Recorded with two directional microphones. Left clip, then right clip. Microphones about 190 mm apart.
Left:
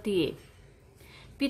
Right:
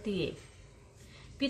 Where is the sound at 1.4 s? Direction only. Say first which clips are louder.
Left 3 dB; 40° left (ahead or behind).